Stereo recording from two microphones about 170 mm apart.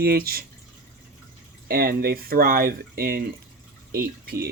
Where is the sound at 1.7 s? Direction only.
60° right (ahead or behind).